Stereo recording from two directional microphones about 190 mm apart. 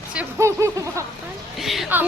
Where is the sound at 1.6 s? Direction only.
Centre (ahead or behind).